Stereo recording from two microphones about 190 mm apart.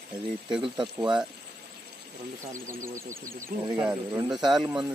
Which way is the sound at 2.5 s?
15° right (ahead or behind).